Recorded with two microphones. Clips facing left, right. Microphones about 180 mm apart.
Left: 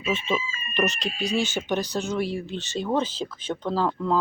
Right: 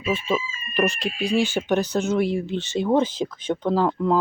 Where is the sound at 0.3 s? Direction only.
5° right (ahead or behind).